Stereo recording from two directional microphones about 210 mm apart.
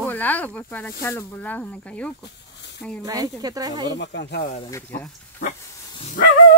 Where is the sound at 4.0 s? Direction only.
55° left (ahead or behind).